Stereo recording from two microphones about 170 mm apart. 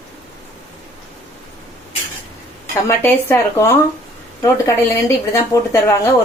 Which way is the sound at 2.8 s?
15° left (ahead or behind).